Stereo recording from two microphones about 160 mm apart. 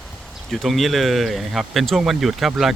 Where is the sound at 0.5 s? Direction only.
Centre (ahead or behind).